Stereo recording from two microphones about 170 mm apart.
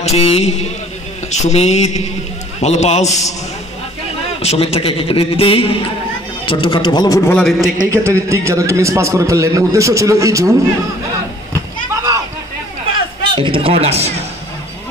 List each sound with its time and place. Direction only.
0.0 s a man's voice: 40° left (ahead or behind)
3.1 s speech: 20° left (ahead or behind)
4.4 s a man's voice: 35° left (ahead or behind)
7.2 s a man's voice: 5° left (ahead or behind)
7.9 s a man's voice: 15° right (ahead or behind)
11.9 s a sound: 20° right (ahead or behind)
13.3 s a man's voice: 30° right (ahead or behind)